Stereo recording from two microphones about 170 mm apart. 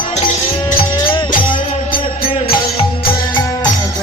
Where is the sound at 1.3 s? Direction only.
50° left (ahead or behind).